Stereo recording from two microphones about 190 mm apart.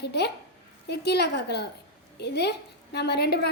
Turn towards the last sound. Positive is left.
turn(degrees=60)  # may be behind; listen again after turning